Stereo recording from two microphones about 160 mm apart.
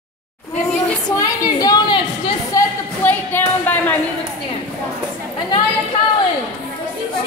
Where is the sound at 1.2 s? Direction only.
20° left (ahead or behind).